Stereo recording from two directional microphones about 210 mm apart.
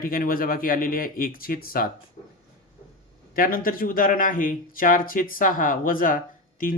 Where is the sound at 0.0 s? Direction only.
45° left (ahead or behind).